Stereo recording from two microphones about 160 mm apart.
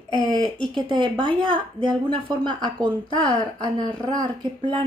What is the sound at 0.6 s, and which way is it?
A woman's voice, 30° right (ahead or behind).